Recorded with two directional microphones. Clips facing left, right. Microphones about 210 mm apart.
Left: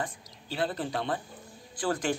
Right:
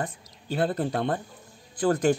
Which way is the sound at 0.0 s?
50° right (ahead or behind).